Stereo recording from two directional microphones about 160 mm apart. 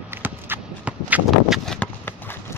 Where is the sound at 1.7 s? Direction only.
10° left (ahead or behind).